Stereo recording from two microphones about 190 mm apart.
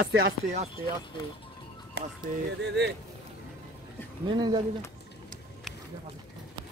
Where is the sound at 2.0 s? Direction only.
60° right (ahead or behind).